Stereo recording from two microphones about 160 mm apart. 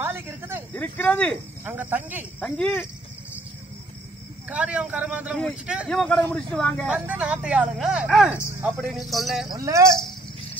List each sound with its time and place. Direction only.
0.0 s snake: 15° right (ahead or behind)
0.7 s speech: 10° left (ahead or behind)
1.6 s speech: 10° right (ahead or behind)
2.4 s speech: 5° left (ahead or behind)
4.5 s speech: 10° right (ahead or behind)
5.9 s speech: 5° left (ahead or behind)
7.1 s speech: 10° right (ahead or behind)
9.5 s speech: 20° right (ahead or behind)